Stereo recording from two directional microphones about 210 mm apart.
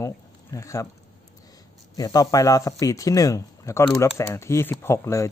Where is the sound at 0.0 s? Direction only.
15° left (ahead or behind).